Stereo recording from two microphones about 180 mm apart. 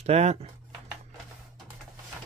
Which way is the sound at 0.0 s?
35° right (ahead or behind).